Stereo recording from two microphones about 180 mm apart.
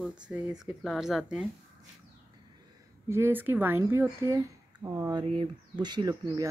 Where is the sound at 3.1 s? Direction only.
10° right (ahead or behind).